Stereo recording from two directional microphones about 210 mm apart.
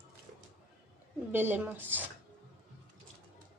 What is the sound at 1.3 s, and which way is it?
Speech, 10° right (ahead or behind).